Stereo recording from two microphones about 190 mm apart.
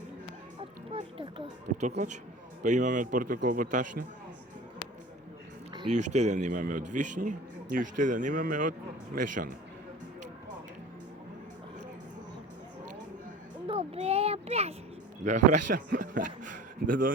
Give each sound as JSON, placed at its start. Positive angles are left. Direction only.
{"t": 0.9, "sound": "speech", "side_deg": -25}
{"t": 2.6, "sound": "a man's voice", "side_deg": -40}
{"t": 5.9, "sound": "a man's voice", "side_deg": -40}
{"t": 13.7, "sound": "a sound", "side_deg": -30}
{"t": 15.2, "sound": "a man's voice", "side_deg": -40}